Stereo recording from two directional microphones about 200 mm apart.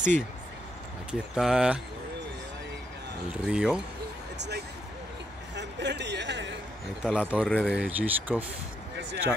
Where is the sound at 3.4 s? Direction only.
5° right (ahead or behind).